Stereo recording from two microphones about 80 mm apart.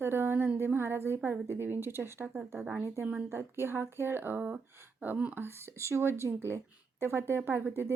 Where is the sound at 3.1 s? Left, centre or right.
Right.